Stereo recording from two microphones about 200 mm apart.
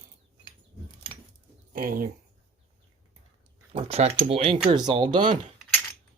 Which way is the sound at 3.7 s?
30° right (ahead or behind).